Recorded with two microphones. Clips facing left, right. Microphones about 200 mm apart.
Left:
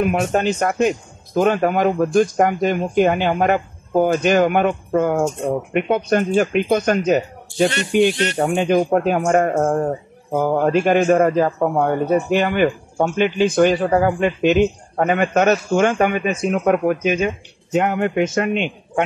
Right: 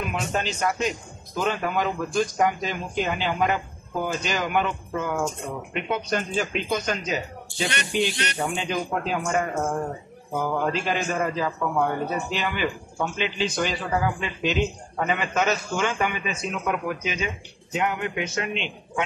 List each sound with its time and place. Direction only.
0.0 s speech: 55° left (ahead or behind)
10.7 s speech: 55° left (ahead or behind)